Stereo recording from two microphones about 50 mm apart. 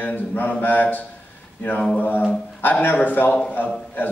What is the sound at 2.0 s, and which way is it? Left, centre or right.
Speech, left.